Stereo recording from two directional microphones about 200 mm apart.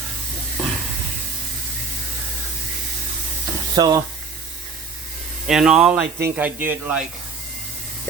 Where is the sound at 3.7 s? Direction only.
20° right (ahead or behind).